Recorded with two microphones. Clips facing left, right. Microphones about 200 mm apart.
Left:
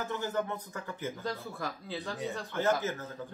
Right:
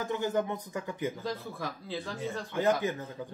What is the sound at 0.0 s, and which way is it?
A man's voice, 15° right (ahead or behind).